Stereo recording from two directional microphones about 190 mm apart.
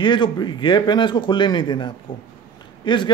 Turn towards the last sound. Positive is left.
turn(degrees=25)  # may be behind; listen again after turning